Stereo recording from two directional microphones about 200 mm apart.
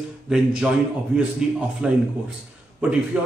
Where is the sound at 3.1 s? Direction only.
5° right (ahead or behind).